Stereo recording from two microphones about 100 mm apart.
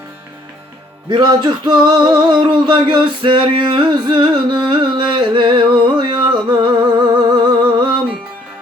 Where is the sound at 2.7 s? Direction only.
55° right (ahead or behind).